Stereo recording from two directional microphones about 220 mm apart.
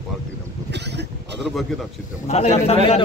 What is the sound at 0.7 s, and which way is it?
Speech, 50° right (ahead or behind).